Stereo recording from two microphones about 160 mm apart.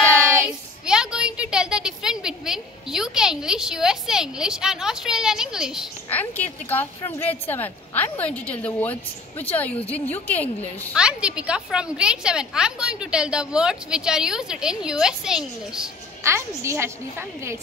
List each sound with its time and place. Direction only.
0.1 s child singing: 10° right (ahead or behind)
6.0 s a woman's voice: 10° left (ahead or behind)
11.0 s a woman's voice: 5° right (ahead or behind)
16.3 s a woman's voice: 15° right (ahead or behind)